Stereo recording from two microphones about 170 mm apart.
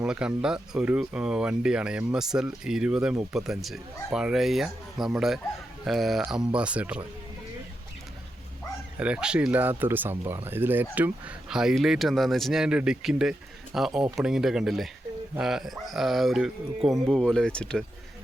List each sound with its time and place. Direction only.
0.0 s speech: 5° right (ahead or behind)
9.0 s speech: 5° right (ahead or behind)